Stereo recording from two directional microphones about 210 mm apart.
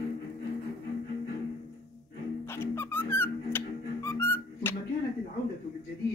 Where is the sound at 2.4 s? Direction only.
10° left (ahead or behind).